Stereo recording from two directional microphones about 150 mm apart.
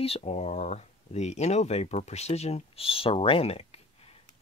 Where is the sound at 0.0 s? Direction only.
40° left (ahead or behind).